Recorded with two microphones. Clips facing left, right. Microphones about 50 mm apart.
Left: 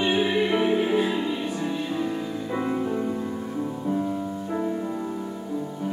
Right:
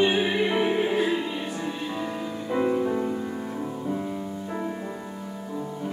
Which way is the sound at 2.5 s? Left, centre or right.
Centre.